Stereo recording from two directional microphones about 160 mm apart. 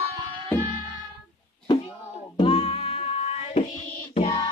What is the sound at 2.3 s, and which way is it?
Music, 35° left (ahead or behind).